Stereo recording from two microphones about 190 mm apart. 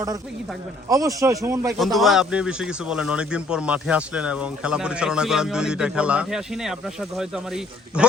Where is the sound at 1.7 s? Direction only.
Centre (ahead or behind).